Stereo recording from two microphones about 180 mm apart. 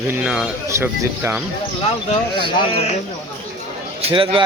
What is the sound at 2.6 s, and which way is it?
Speech, 35° left (ahead or behind).